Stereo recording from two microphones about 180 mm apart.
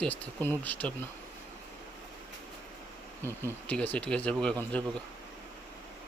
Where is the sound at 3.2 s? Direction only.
15° right (ahead or behind).